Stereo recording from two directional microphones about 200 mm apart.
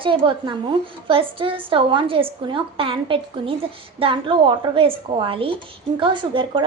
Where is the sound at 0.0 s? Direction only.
25° right (ahead or behind).